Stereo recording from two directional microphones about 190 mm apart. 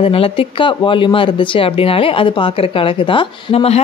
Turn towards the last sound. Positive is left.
turn(degrees=30)  # may be behind; listen again after turning